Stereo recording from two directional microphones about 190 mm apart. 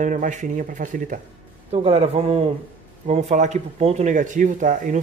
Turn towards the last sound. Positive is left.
turn(degrees=-45)  # may be behind; listen again after turning